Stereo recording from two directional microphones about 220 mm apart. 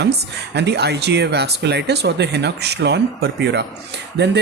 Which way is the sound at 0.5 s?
50° right (ahead or behind).